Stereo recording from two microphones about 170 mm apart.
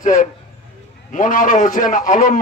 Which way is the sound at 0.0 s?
50° left (ahead or behind).